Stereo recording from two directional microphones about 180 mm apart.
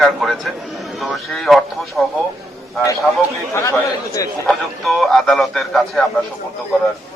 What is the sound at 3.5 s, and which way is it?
Speech, 15° left (ahead or behind).